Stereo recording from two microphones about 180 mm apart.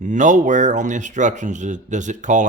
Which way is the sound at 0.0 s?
45° right (ahead or behind).